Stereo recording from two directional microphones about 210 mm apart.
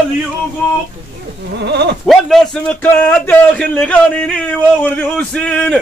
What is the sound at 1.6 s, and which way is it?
Sheep, 50° right (ahead or behind).